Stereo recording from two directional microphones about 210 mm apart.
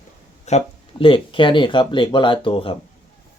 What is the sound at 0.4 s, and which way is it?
Speech, 30° left (ahead or behind).